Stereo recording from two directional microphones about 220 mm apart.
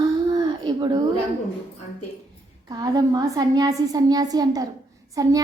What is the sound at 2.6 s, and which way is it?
A woman's voice, 15° right (ahead or behind).